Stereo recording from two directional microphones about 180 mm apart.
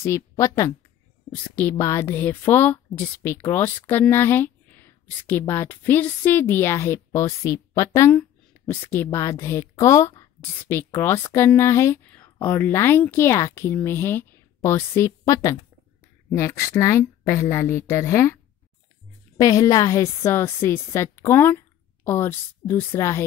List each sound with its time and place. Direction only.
0.0 s speech: 15° left (ahead or behind)
19.4 s speech: 20° left (ahead or behind)